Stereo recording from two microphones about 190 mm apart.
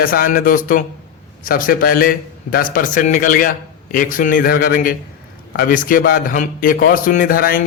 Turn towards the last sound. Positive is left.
turn(degrees=50)  # may be behind; listen again after turning